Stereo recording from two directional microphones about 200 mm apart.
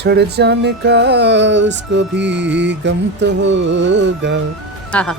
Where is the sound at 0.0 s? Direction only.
55° right (ahead or behind).